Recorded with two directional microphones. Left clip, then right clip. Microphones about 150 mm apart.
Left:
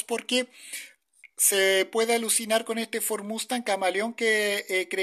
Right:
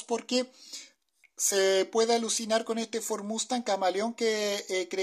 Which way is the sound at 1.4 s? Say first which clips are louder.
Left 3 dB; centre (ahead or behind).